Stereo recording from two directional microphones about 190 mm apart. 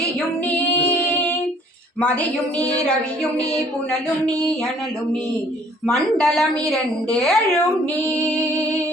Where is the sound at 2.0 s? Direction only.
5° left (ahead or behind).